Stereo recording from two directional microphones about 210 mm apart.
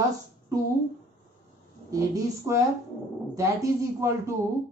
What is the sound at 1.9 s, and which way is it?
Speech, 15° right (ahead or behind).